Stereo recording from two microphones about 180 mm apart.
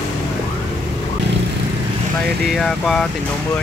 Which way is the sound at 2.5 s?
5° left (ahead or behind).